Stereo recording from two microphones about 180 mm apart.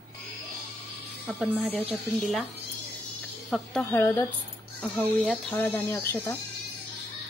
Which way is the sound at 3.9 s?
15° left (ahead or behind).